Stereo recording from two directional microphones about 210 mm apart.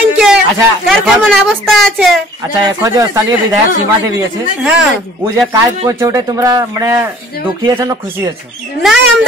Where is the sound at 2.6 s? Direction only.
15° right (ahead or behind).